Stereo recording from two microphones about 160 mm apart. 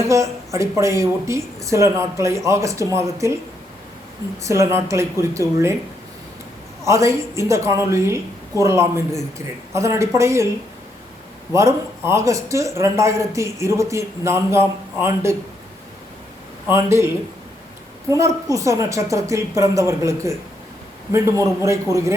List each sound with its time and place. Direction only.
0.1 s a man's voice: 20° right (ahead or behind)
4.4 s a man's voice: 20° right (ahead or behind)
6.8 s a man's voice: 20° right (ahead or behind)
11.5 s a man's voice: 20° right (ahead or behind)
16.6 s a man's voice: 15° right (ahead or behind)
18.5 s a woman's voice: 20° right (ahead or behind)